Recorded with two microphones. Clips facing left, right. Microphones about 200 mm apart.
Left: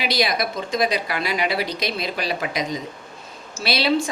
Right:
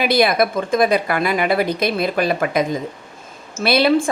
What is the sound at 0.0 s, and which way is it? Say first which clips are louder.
A woman's voice: right 7 dB; 55° right (ahead or behind).